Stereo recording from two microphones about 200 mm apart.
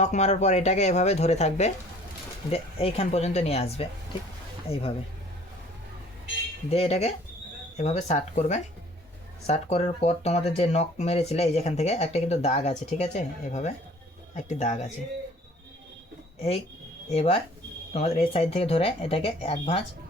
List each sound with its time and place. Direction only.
0.0 s speech: 35° left (ahead or behind)
6.7 s speech: 30° left (ahead or behind)
17.1 s speech: 30° left (ahead or behind)